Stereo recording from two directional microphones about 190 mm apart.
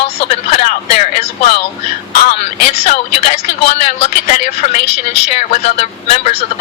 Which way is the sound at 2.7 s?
35° left (ahead or behind).